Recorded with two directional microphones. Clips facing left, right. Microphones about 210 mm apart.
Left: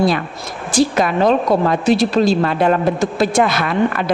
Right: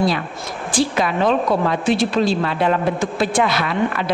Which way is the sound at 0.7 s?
45° left (ahead or behind).